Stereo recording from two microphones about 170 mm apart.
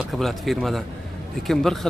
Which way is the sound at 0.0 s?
Centre (ahead or behind).